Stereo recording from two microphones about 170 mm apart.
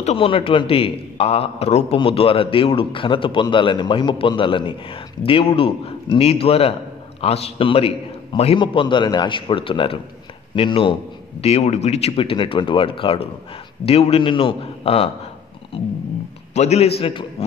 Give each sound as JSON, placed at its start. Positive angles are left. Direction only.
{"t": 0.0, "sound": "a man's voice", "side_deg": 35}